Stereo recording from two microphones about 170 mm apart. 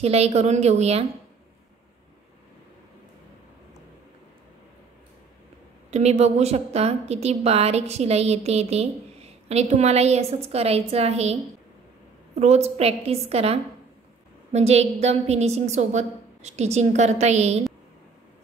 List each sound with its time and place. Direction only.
0.0 s a woman's voice: 40° right (ahead or behind)
5.9 s a woman's voice: 40° right (ahead or behind)
12.4 s a woman's voice: 40° right (ahead or behind)